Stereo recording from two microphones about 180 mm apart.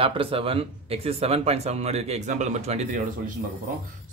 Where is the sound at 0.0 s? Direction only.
30° right (ahead or behind).